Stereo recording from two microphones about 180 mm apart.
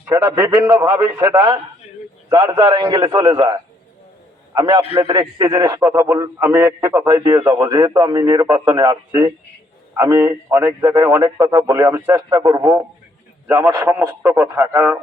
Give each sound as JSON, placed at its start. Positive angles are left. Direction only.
{"t": 0.1, "sound": "a man's voice", "side_deg": -20}